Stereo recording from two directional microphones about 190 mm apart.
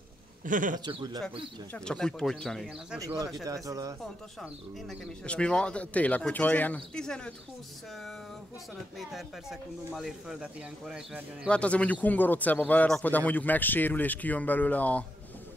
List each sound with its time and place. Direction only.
0.5 s a man's voice: 45° right (ahead or behind)
0.7 s a man's voice: 20° right (ahead or behind)
1.7 s speech: 5° left (ahead or behind)
3.0 s speech: 20° right (ahead or behind)
5.0 s speech: 5° left (ahead or behind)
8.9 s speech: centre (ahead or behind)